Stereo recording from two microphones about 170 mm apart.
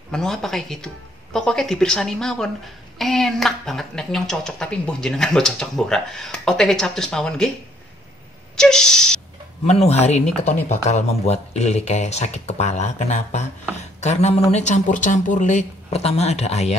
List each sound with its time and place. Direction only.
0.1 s a woman's voice: 5° left (ahead or behind)
8.5 s a woman's voice: 5° left (ahead or behind)
9.7 s speech: 40° left (ahead or behind)